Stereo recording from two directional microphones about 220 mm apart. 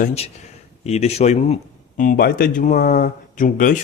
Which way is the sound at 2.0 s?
40° left (ahead or behind).